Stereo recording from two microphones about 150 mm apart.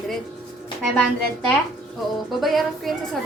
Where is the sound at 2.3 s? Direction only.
Centre (ahead or behind).